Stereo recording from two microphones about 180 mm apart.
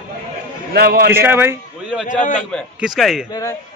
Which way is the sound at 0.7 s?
60° right (ahead or behind).